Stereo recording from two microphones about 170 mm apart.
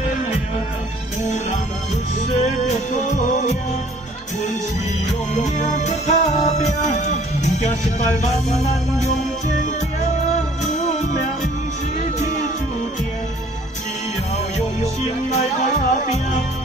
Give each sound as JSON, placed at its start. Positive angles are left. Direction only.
{"t": 2.2, "sound": "music", "side_deg": 40}
{"t": 5.6, "sound": "music", "side_deg": 45}
{"t": 15.3, "sound": "music", "side_deg": 40}